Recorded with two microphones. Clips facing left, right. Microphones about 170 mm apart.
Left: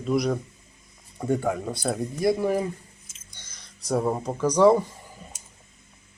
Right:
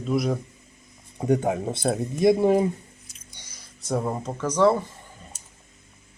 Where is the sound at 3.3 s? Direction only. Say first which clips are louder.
Left 1 dB; 10° right (ahead or behind); by 4.9 s 10° left (ahead or behind).